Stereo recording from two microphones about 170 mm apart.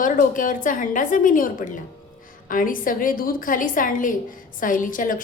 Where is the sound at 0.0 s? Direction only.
50° left (ahead or behind).